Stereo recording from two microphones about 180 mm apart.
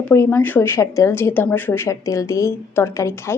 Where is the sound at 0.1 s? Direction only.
10° left (ahead or behind).